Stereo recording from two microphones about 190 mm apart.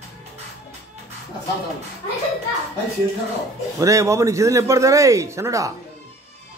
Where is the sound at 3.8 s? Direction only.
15° right (ahead or behind).